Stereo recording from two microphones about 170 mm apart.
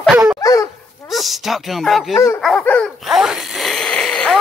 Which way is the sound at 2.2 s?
15° left (ahead or behind).